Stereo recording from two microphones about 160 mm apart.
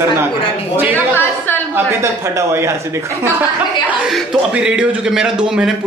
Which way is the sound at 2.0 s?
15° right (ahead or behind).